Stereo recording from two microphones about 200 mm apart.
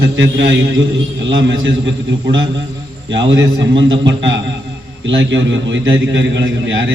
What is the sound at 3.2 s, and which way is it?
A man's voice, 65° right (ahead or behind).